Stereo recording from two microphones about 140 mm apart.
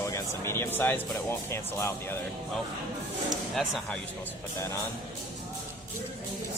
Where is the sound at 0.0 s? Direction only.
20° left (ahead or behind).